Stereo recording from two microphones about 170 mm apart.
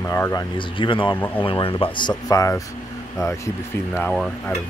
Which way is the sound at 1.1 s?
10° left (ahead or behind).